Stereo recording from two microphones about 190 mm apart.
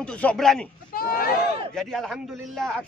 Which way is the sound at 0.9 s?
50° left (ahead or behind).